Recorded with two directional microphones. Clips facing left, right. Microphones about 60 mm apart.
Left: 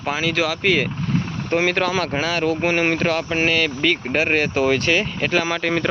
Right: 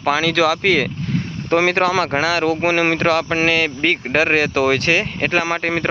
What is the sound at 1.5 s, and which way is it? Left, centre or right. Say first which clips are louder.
Speech: right 4 dB; right.